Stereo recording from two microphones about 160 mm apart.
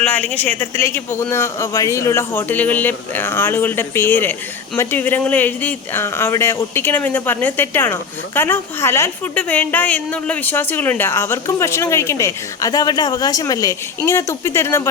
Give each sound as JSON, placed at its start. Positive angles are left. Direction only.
{"t": 0.0, "sound": "speech", "side_deg": 10}